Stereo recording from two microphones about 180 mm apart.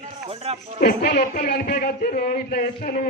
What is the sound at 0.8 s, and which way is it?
A man's voice, 50° left (ahead or behind).